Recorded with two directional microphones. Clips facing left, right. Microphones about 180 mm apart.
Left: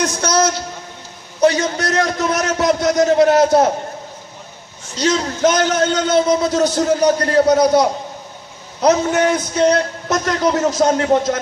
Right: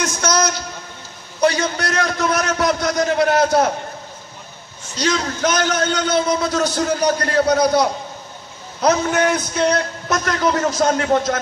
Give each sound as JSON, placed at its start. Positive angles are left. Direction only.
{"t": 0.0, "sound": "a man's voice", "side_deg": 30}
{"t": 4.9, "sound": "a man's voice", "side_deg": 20}